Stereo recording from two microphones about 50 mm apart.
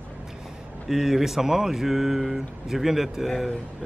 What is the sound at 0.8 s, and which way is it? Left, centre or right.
Speech, centre.